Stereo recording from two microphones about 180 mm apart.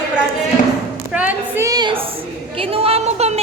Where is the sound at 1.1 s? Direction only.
10° right (ahead or behind); by 3.4 s 35° right (ahead or behind).